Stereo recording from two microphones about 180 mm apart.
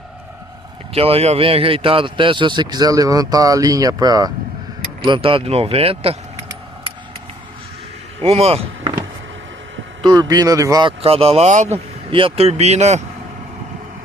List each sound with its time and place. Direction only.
0.9 s a man's voice: 35° right (ahead or behind)
8.2 s speech: 35° right (ahead or behind)
10.0 s speech: 20° right (ahead or behind); by 13.0 s 40° right (ahead or behind)